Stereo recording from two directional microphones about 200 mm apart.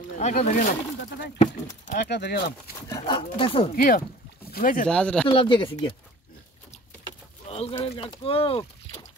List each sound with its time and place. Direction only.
0.2 s speech: 35° left (ahead or behind)
1.9 s speech: 50° left (ahead or behind)
2.9 s speech: 25° left (ahead or behind)
3.7 s speech: 45° left (ahead or behind)
4.8 s speech: 5° left (ahead or behind)
5.3 s speech: 25° left (ahead or behind)
7.4 s speech: 30° left (ahead or behind)